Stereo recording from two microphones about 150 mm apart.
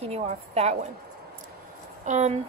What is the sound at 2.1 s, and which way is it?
Speech, 50° right (ahead or behind).